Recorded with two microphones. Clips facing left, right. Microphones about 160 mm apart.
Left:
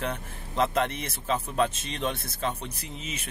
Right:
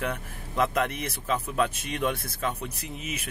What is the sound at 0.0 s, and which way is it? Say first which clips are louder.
Speech: right 1 dB; 30° left (ahead or behind).